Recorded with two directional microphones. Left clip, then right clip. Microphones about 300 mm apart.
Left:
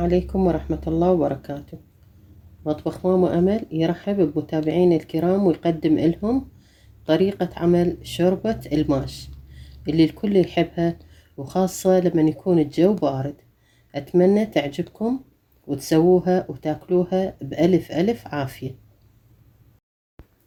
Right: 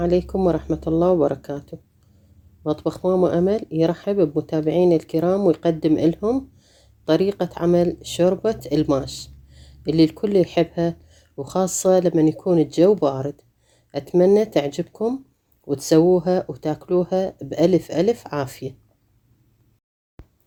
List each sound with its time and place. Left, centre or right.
0.0 s speech: right
2.6 s speech: right
20.2 s a sound: right